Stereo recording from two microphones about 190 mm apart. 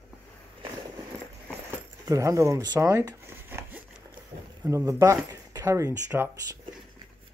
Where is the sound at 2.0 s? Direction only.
15° right (ahead or behind).